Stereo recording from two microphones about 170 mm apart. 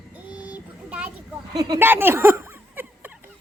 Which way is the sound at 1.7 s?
10° right (ahead or behind).